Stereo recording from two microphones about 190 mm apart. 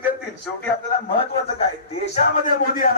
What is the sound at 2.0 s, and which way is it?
Speech, 35° left (ahead or behind).